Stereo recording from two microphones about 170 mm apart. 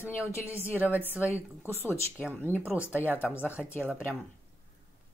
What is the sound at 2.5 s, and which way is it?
Speech, 10° right (ahead or behind).